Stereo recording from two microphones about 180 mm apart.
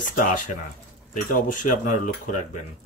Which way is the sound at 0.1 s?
50° left (ahead or behind).